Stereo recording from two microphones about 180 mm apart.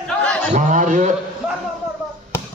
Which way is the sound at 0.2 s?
5° left (ahead or behind).